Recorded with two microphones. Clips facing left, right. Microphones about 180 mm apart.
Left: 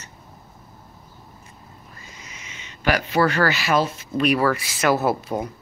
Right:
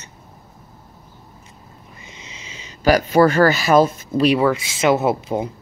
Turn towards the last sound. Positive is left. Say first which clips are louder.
# right 3 dB
turn(degrees=-25)  # may be behind; listen again after turning